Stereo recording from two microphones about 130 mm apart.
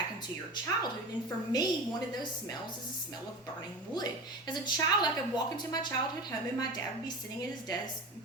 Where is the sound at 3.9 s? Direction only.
30° left (ahead or behind).